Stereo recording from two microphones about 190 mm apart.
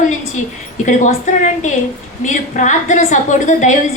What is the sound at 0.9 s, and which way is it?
A woman's voice, 40° left (ahead or behind).